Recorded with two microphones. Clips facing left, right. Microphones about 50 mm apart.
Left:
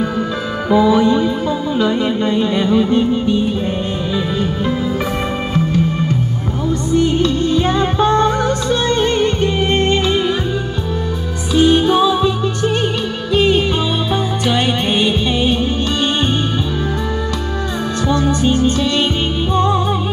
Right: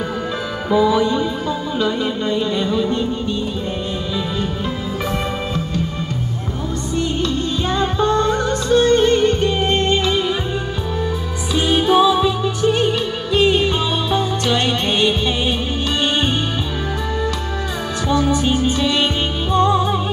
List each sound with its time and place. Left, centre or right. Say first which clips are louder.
0.7 s music: left 3 dB; centre
2.2 s music: left 2 dB; left
7.2 s music: left 5 dB; left
7.7 s music: left 3 dB; left
8.8 s music: even; left
11.5 s music: left 3 dB; centre
18.0 s music: left 1 dB; centre